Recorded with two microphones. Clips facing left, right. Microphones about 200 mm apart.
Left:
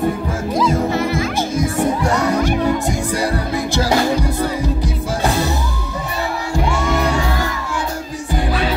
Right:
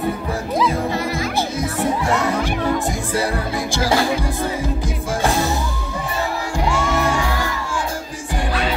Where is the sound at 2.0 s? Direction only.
40° left (ahead or behind).